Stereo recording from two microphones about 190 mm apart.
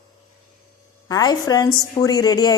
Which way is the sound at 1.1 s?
20° left (ahead or behind).